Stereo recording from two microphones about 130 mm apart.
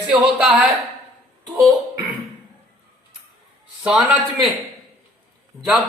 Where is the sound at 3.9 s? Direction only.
5° right (ahead or behind).